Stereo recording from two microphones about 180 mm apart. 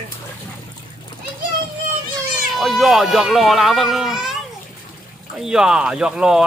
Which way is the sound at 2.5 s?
Centre (ahead or behind).